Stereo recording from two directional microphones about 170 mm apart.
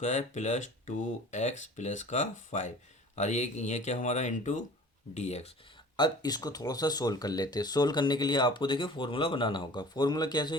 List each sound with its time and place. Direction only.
0.0 s speech: 45° left (ahead or behind)
6.0 s speech: 25° left (ahead or behind)